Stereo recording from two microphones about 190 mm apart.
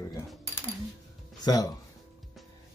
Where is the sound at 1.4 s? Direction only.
20° left (ahead or behind).